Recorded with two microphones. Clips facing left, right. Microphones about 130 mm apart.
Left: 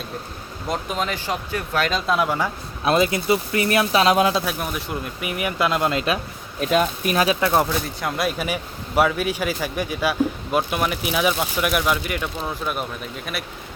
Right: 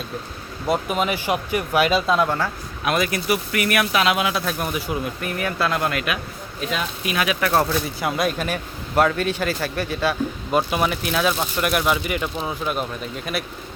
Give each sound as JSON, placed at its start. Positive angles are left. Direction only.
{"t": 0.7, "sound": "speech", "side_deg": -5}
{"t": 2.1, "sound": "a man's voice", "side_deg": 10}
{"t": 2.8, "sound": "speech", "side_deg": 25}
{"t": 4.4, "sound": "speech", "side_deg": 0}
{"t": 5.2, "sound": "a man's voice", "side_deg": 15}
{"t": 6.6, "sound": "speech", "side_deg": 45}
{"t": 7.3, "sound": "speech", "side_deg": 20}
{"t": 7.7, "sound": "a man's voice", "side_deg": 0}
{"t": 10.6, "sound": "speech", "side_deg": 0}